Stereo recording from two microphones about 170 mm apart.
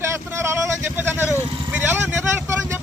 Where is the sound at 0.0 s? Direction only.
15° right (ahead or behind).